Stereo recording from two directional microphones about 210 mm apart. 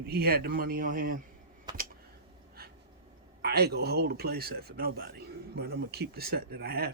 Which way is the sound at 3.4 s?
50° right (ahead or behind).